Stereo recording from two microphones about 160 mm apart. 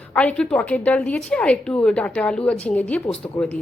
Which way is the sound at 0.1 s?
10° left (ahead or behind).